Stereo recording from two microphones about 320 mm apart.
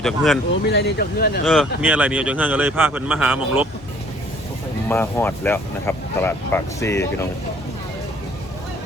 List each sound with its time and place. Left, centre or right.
0.0 s a man's voice: centre
0.7 s speech: left
1.5 s a man's voice: centre
4.9 s speech: centre